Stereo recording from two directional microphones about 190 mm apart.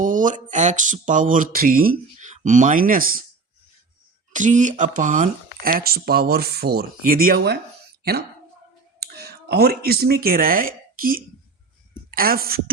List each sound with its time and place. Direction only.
0.0 s speech: 45° right (ahead or behind)
4.3 s speech: 40° right (ahead or behind)